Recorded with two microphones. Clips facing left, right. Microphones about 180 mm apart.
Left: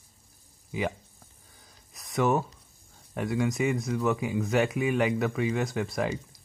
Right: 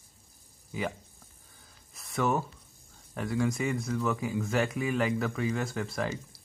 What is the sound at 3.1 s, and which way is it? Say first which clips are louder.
Speech: left 2 dB; 15° left (ahead or behind).